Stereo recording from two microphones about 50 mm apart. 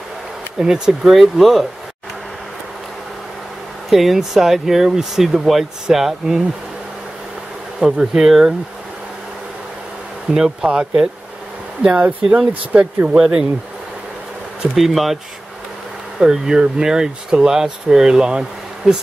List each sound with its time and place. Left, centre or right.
0.6 s speech: centre
1.1 s speech: centre
3.9 s speech: centre
7.8 s speech: centre
10.3 s speech: centre
11.9 s speech: right
13.1 s speech: centre
14.8 s speech: centre
16.2 s speech: centre